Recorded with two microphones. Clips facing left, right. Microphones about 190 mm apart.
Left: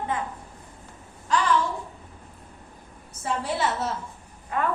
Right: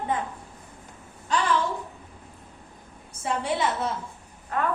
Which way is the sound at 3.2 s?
Centre (ahead or behind).